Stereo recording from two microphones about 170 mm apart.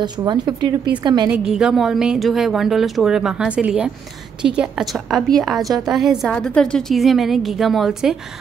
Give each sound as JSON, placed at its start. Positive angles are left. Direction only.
{"t": 0.0, "sound": "a woman's voice", "side_deg": -25}
{"t": 1.3, "sound": "a woman's voice", "side_deg": -5}